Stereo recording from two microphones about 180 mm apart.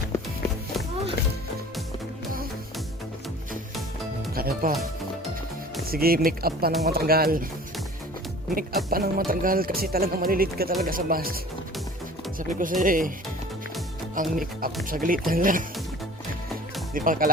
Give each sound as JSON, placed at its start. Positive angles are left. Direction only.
{"t": 4.4, "sound": "speech", "side_deg": -55}
{"t": 5.9, "sound": "speech", "side_deg": -55}
{"t": 8.5, "sound": "speech", "side_deg": -55}
{"t": 12.4, "sound": "speech", "side_deg": -50}
{"t": 14.2, "sound": "speech", "side_deg": -50}
{"t": 16.9, "sound": "speech", "side_deg": -50}